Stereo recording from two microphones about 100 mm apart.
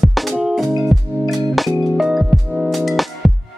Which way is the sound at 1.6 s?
Centre (ahead or behind).